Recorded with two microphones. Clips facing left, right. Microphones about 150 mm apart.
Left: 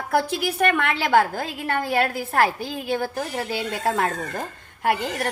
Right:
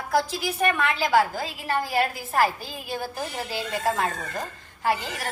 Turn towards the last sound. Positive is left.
turn(degrees=55)  # may be behind; listen again after turning